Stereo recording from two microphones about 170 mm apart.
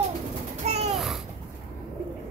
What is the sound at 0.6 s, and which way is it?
Babbling, 40° right (ahead or behind).